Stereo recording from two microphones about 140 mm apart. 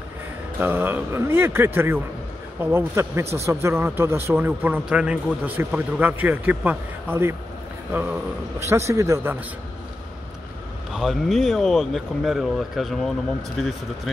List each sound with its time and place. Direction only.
0.6 s speech: 15° right (ahead or behind)
8.5 s speech: 20° right (ahead or behind)
10.9 s speech: centre (ahead or behind)